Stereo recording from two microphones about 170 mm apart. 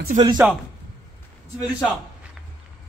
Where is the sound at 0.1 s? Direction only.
45° right (ahead or behind).